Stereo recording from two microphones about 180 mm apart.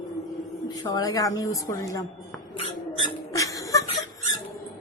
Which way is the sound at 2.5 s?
30° left (ahead or behind).